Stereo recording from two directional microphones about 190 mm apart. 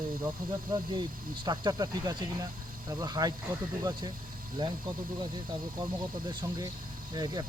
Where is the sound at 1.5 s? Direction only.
20° right (ahead or behind).